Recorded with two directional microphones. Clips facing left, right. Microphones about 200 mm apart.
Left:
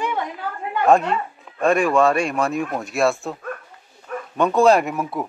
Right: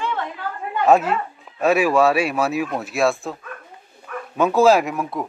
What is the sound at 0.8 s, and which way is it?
Speech, 5° right (ahead or behind).